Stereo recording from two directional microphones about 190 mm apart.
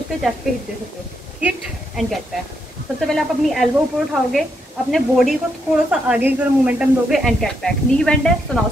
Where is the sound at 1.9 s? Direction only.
Centre (ahead or behind).